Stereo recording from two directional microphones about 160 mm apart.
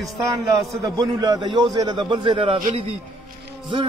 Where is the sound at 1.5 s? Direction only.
25° right (ahead or behind).